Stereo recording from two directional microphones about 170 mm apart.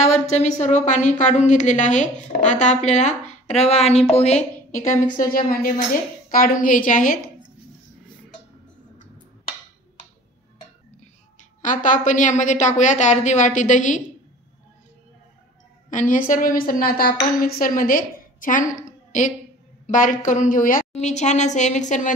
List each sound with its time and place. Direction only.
0.0 s a woman's voice: 40° left (ahead or behind)
11.6 s a woman's voice: 50° left (ahead or behind)
15.9 s a woman's voice: 50° left (ahead or behind)
20.9 s a woman's voice: 40° left (ahead or behind)